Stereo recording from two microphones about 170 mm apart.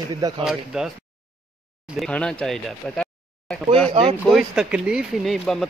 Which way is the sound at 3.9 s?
35° right (ahead or behind).